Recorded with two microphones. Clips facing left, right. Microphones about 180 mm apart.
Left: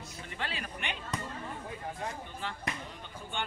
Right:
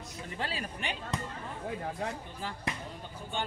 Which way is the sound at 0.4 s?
35° right (ahead or behind).